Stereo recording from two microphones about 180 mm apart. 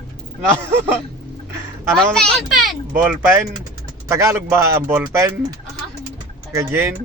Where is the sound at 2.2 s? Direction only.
Centre (ahead or behind); by 5.0 s 15° right (ahead or behind).